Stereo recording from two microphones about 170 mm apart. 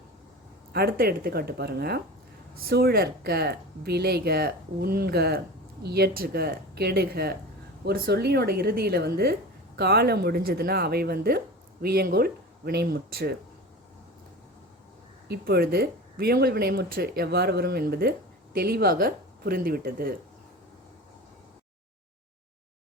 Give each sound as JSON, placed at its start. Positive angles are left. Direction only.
{"t": 0.7, "sound": "speech", "side_deg": -65}
{"t": 15.3, "sound": "speech", "side_deg": -65}